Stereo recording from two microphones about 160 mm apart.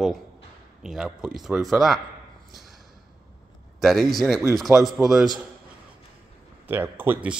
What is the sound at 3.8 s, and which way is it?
A man's voice, centre (ahead or behind).